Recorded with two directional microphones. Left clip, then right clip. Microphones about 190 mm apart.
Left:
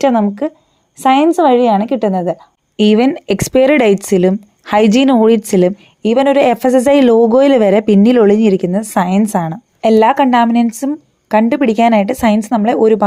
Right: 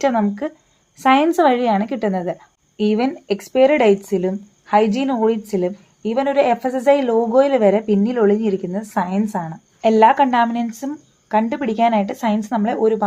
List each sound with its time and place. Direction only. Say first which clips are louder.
0.0 s a woman's voice: left 6 dB; 30° left (ahead or behind)
2.7 s speech: left 8 dB; 45° left (ahead or behind)
9.8 s speech: left 3 dB; 30° left (ahead or behind)